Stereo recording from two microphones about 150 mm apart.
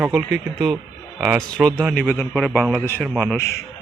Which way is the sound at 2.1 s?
5° left (ahead or behind).